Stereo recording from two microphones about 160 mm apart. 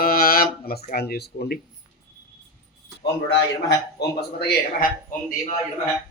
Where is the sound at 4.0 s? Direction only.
90° left.